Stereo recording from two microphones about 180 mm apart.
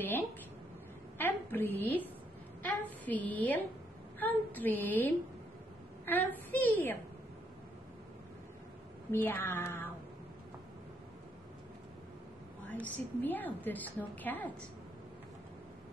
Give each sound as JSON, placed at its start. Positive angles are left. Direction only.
{"t": 1.1, "sound": "a woman's voice", "side_deg": 10}
{"t": 9.1, "sound": "a woman's voice", "side_deg": 10}
{"t": 12.8, "sound": "a woman's voice", "side_deg": 10}